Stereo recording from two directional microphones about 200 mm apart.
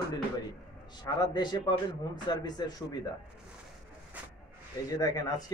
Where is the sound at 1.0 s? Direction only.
20° left (ahead or behind).